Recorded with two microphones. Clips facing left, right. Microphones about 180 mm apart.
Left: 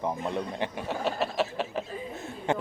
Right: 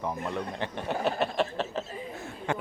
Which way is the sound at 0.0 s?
15° left (ahead or behind).